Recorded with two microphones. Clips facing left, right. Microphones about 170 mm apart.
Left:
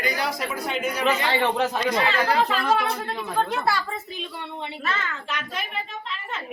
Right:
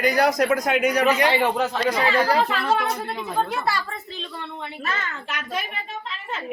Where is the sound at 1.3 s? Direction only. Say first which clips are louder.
Right 1 dB; 10° right (ahead or behind).